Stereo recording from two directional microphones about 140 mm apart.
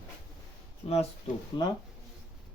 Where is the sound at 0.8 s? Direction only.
45° left (ahead or behind).